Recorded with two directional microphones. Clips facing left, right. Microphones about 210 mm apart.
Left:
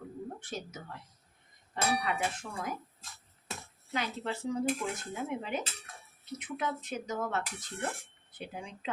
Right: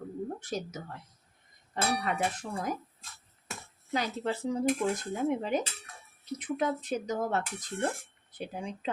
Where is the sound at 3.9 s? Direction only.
35° right (ahead or behind).